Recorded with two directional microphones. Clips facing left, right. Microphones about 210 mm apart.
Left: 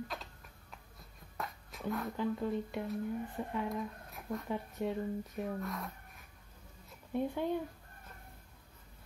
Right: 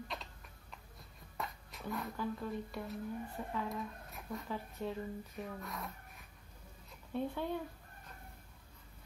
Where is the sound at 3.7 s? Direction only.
Centre (ahead or behind).